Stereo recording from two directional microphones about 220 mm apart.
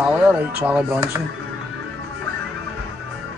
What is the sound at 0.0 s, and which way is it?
Speech, 5° right (ahead or behind).